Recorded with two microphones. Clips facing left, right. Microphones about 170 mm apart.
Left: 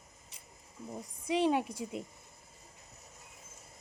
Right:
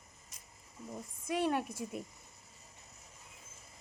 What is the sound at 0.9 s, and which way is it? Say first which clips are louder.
A woman's voice: left 4 dB; 20° left (ahead or behind).